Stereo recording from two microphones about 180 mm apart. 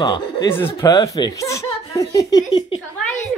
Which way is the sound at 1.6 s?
35° left (ahead or behind).